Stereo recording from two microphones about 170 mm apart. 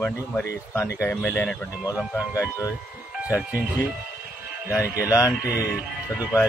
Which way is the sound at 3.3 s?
10° right (ahead or behind).